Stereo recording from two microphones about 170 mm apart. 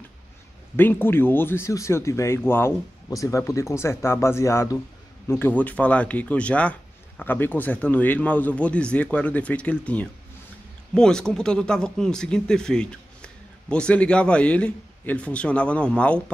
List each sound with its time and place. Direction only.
0.7 s speech: 10° left (ahead or behind)